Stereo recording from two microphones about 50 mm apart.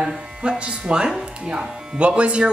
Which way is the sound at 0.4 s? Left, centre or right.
Centre.